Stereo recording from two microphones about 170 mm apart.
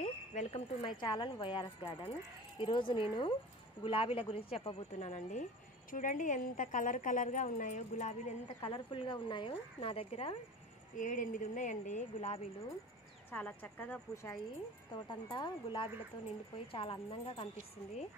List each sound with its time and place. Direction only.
0.0 s cricket: 40° left (ahead or behind)
0.8 s a woman's voice: 25° left (ahead or behind); by 8.2 s 45° left (ahead or behind)
8.5 s a woman's voice: 30° left (ahead or behind)
11.0 s a woman's voice: 50° left (ahead or behind)
13.3 s a woman's voice: 10° left (ahead or behind); by 17.5 s 30° left (ahead or behind)